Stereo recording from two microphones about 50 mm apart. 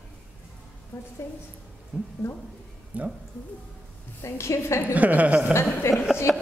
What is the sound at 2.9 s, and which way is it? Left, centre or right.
Speech, right.